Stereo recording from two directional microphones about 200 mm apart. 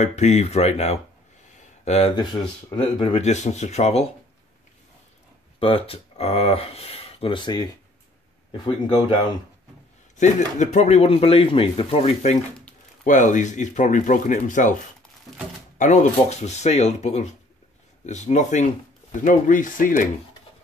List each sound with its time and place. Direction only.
0.0 s speech: 35° left (ahead or behind)
5.6 s speech: 25° left (ahead or behind)
10.1 s speech: 35° left (ahead or behind)
15.8 s speech: 35° left (ahead or behind)